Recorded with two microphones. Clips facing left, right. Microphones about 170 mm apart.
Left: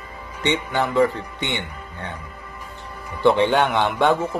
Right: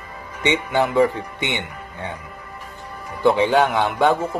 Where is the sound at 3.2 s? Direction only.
Centre (ahead or behind).